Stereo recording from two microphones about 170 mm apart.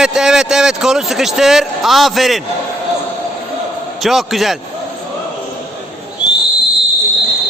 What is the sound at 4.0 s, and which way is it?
Speech, centre (ahead or behind).